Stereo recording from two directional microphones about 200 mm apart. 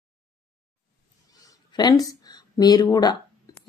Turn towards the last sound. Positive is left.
turn(degrees=20)  # may be behind; listen again after turning